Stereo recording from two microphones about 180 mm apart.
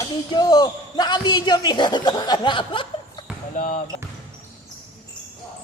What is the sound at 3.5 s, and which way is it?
Speech, 45° left (ahead or behind).